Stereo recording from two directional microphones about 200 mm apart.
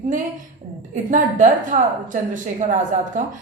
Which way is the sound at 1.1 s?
40° right (ahead or behind).